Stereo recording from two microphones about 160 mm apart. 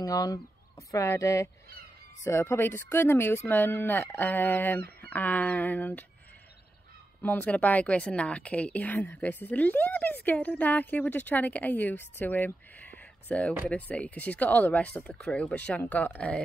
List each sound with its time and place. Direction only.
0.0 s a woman's voice: 20° left (ahead or behind)
7.2 s a woman's voice: 10° left (ahead or behind)